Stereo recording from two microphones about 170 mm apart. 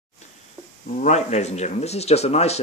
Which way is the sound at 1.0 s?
40° left (ahead or behind).